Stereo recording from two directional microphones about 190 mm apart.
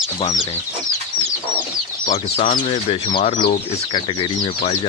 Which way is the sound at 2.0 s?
35° left (ahead or behind).